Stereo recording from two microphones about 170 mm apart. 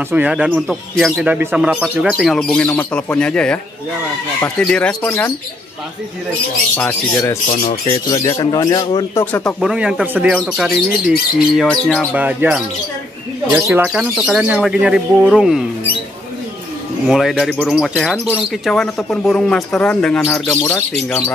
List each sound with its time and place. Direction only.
0.1 s speech: 10° right (ahead or behind); by 5.3 s 10° left (ahead or behind)
6.8 s a man's voice: 15° left (ahead or behind)
9.2 s speech: 10° left (ahead or behind)
9.6 s speech: 5° right (ahead or behind)
12.1 s speech: 10° right (ahead or behind)
13.8 s speech: 5° right (ahead or behind)
17.1 s speech: centre (ahead or behind)